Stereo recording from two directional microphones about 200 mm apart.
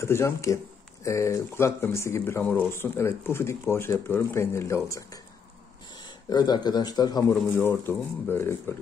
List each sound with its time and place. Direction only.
0.0 s speech: 15° left (ahead or behind)